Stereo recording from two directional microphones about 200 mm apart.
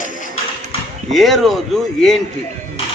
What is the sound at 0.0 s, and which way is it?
Tap, 40° left (ahead or behind).